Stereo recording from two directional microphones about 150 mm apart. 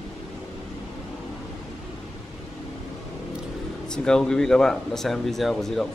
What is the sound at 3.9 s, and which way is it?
Speech, 5° left (ahead or behind).